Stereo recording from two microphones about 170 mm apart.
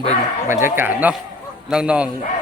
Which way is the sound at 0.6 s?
10° right (ahead or behind).